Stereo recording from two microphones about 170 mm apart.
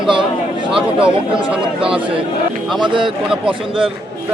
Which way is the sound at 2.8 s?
30° right (ahead or behind).